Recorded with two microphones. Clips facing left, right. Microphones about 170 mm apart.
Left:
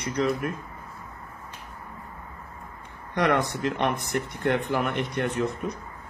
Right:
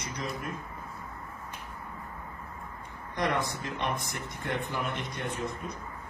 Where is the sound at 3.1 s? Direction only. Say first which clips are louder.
Left 6 dB; 65° left (ahead or behind).